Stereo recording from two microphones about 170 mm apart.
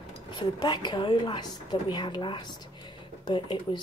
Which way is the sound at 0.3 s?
30° left (ahead or behind).